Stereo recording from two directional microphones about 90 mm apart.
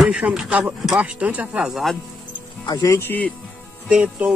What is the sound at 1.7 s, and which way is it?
Speech, centre (ahead or behind).